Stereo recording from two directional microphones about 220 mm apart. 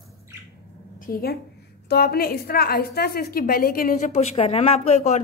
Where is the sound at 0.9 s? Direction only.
40° left (ahead or behind).